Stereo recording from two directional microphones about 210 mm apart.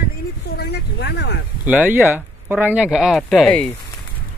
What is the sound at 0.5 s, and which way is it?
Vehicle, 50° left (ahead or behind).